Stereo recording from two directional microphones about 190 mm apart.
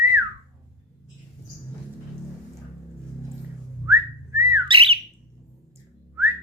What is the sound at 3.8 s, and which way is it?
Whistling, 15° right (ahead or behind).